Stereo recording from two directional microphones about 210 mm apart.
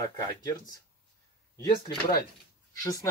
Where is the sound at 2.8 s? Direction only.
15° left (ahead or behind).